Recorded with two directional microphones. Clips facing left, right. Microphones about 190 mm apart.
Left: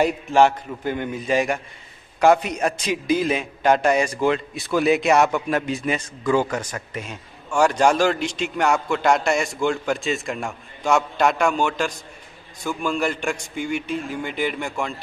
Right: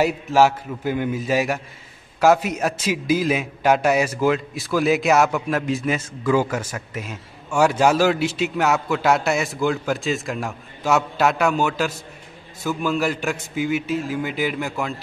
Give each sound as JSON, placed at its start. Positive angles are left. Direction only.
{"t": 0.0, "sound": "a man's voice", "side_deg": -5}